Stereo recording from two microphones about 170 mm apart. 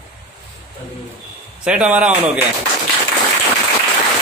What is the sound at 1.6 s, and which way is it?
Speech, 5° right (ahead or behind).